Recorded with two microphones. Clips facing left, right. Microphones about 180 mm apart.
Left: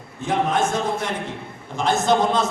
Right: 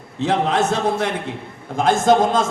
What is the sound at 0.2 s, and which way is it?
Speech, 70° right (ahead or behind).